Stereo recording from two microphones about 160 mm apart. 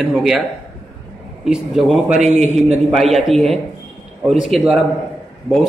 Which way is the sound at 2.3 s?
45° right (ahead or behind).